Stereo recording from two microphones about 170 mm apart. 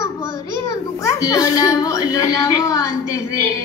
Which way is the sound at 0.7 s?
20° left (ahead or behind).